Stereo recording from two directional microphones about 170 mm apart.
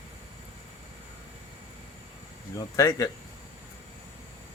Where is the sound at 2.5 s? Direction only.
20° left (ahead or behind).